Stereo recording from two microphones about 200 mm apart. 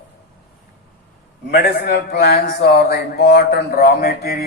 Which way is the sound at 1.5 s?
55° left (ahead or behind).